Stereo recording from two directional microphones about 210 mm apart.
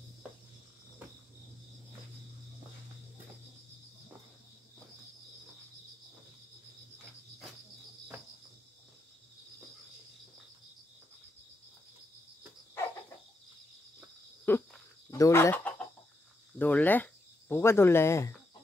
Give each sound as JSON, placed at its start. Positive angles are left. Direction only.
{"t": 14.4, "sound": "chicken", "side_deg": 10}
{"t": 16.5, "sound": "speech", "side_deg": 10}